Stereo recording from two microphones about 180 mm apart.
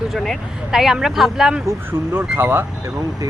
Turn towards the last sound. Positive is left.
turn(degrees=-15)  # may be behind; listen again after turning